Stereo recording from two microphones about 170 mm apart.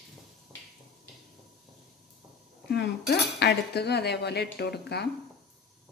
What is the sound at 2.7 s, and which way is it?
Cutlery, 75° left (ahead or behind).